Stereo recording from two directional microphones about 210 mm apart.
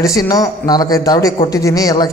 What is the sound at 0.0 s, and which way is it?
Speech, 15° left (ahead or behind).